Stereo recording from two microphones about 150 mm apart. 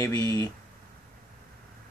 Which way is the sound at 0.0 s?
20° left (ahead or behind).